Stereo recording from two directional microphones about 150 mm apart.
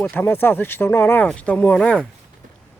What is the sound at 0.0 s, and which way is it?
Speech, 10° left (ahead or behind).